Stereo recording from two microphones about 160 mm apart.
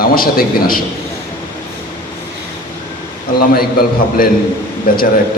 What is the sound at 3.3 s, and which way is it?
A man's voice, 70° left (ahead or behind).